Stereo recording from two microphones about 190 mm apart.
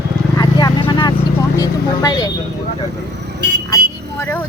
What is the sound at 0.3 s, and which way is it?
Vehicle, 25° left (ahead or behind).